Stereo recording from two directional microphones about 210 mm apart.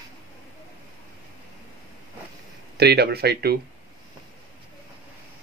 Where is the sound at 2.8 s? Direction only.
50° right (ahead or behind).